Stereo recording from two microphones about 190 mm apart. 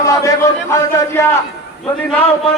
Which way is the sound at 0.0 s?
15° left (ahead or behind).